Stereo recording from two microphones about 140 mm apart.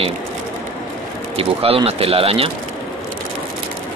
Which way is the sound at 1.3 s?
45° right (ahead or behind).